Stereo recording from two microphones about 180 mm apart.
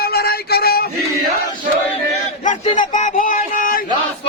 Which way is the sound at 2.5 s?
45° left (ahead or behind).